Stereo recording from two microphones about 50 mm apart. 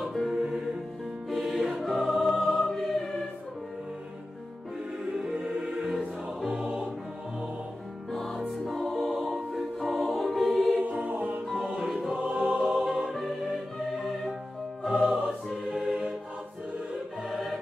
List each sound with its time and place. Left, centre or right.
0.3 s music: centre
1.3 s choir: centre
5.3 s music: centre
5.9 s music: centre
6.5 s music: centre
8.1 s music: centre
10.8 s music: right
12.3 s choir: centre
13.9 s music: centre
17.3 s music: centre